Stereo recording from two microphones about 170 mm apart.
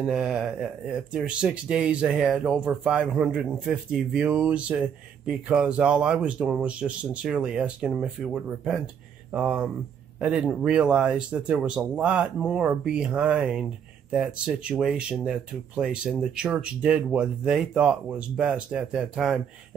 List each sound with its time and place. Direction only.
0.0 s speech: 5° right (ahead or behind)